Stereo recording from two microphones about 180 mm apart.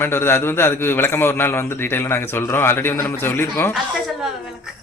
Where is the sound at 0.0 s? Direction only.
15° left (ahead or behind).